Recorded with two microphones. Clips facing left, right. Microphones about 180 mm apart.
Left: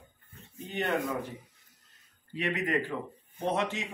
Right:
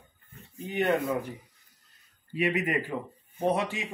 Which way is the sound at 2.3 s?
15° right (ahead or behind).